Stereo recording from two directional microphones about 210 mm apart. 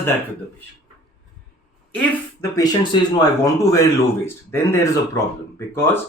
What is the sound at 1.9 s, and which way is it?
Speech, 5° left (ahead or behind).